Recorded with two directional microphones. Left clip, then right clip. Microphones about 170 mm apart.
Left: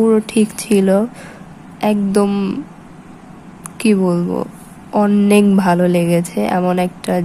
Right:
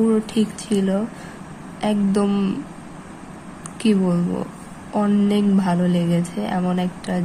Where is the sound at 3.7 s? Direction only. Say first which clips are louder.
Left 5 dB; 30° left (ahead or behind).